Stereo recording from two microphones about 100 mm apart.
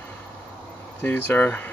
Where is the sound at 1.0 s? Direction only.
20° left (ahead or behind).